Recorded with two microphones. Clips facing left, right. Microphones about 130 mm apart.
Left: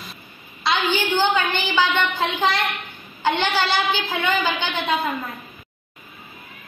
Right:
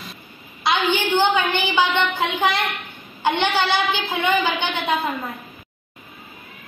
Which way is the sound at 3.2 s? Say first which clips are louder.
Right 1 dB; 15° right (ahead or behind).